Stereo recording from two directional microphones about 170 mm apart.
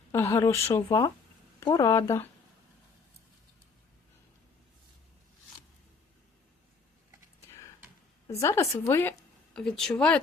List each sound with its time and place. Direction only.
0.1 s speech: 15° left (ahead or behind)
8.3 s speech: 15° left (ahead or behind)